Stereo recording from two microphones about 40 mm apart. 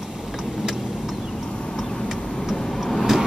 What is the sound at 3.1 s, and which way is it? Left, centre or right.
Vehicle, centre.